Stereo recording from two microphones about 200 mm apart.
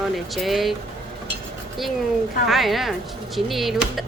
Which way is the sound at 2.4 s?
Centre (ahead or behind).